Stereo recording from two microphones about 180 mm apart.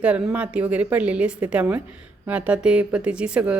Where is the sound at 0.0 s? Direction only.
5° right (ahead or behind).